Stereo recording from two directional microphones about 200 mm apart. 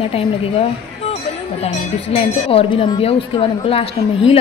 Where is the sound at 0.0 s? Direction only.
30° left (ahead or behind).